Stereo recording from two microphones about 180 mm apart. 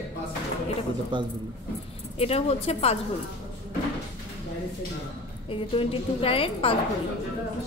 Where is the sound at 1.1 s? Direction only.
25° right (ahead or behind).